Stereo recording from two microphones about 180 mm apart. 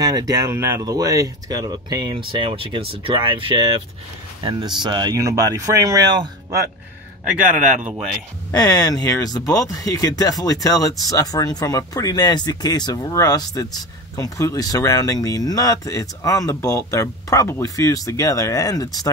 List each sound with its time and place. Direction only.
0.0 s speech: 20° right (ahead or behind)
8.5 s speech: 20° left (ahead or behind)